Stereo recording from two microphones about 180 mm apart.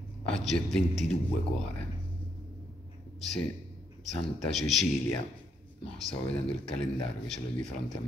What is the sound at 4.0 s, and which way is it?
Speech, centre (ahead or behind).